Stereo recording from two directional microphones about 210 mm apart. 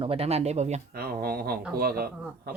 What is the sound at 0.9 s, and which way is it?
Speech, 45° right (ahead or behind).